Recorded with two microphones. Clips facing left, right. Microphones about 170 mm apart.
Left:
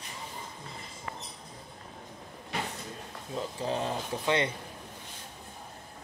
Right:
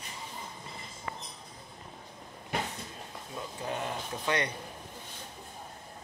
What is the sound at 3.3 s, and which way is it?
Speech, 25° left (ahead or behind).